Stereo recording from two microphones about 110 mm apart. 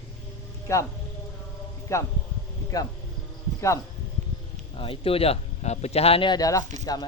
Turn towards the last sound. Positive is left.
turn(degrees=35)  # may be behind; listen again after turning